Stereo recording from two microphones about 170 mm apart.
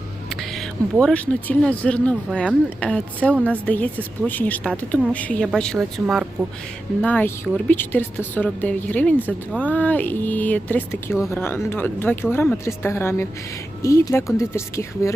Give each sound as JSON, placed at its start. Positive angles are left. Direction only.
{"t": 0.3, "sound": "speech", "side_deg": 0}
{"t": 7.0, "sound": "speech", "side_deg": 10}